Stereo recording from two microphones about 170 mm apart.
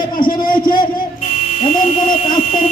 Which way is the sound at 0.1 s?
55° left (ahead or behind).